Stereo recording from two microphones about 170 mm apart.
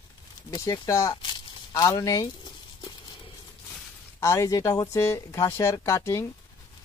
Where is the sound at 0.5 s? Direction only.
20° left (ahead or behind).